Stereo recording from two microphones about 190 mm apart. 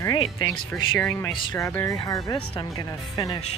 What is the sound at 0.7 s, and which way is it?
Speech, 5° left (ahead or behind).